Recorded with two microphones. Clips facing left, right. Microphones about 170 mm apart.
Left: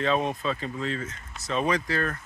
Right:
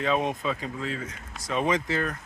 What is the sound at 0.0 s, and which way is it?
Speech, 15° right (ahead or behind).